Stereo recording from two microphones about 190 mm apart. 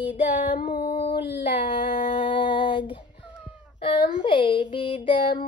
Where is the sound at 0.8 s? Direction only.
30° left (ahead or behind).